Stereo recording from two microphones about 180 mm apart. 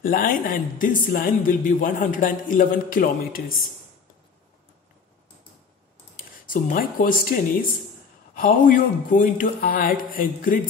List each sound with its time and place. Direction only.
0.0 s speech: 50° left (ahead or behind)
6.1 s speech: 50° left (ahead or behind)
8.4 s speech: 55° left (ahead or behind)